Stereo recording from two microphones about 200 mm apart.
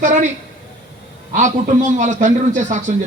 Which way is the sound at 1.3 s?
35° right (ahead or behind).